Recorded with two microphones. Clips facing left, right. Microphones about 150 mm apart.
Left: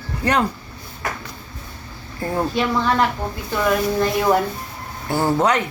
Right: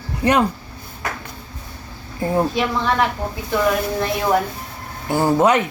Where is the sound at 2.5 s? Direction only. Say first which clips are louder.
Left 1 dB; 5° right (ahead or behind).